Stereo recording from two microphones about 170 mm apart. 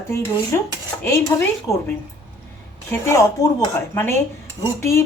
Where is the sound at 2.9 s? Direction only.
15° left (ahead or behind).